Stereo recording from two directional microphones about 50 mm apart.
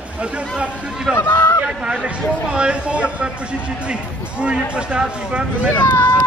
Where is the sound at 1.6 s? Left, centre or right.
Right.